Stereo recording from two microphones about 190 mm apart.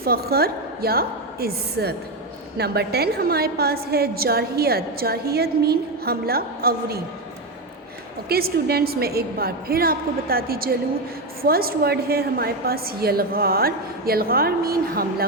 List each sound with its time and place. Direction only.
0.0 s a woman's voice: 55° right (ahead or behind)
8.3 s a woman's voice: 55° right (ahead or behind)